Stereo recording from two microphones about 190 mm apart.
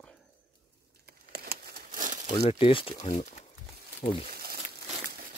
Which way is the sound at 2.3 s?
30° left (ahead or behind).